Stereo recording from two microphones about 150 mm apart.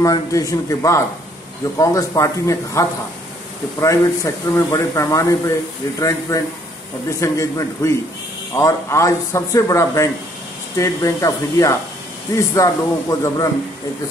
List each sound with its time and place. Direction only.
0.0 s speech: 20° left (ahead or behind)